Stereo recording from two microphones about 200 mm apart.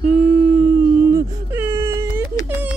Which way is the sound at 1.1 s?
10° right (ahead or behind).